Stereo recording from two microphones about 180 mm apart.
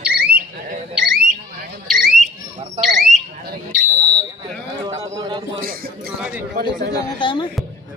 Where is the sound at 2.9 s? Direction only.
Centre (ahead or behind).